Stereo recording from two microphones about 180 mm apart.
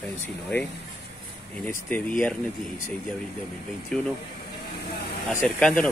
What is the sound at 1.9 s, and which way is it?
Speech, 10° left (ahead or behind).